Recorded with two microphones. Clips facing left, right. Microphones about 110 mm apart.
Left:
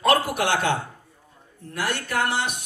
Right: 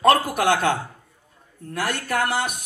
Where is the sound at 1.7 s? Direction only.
50° right (ahead or behind).